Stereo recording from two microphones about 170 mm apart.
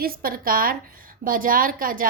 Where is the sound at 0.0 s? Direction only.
60° right (ahead or behind).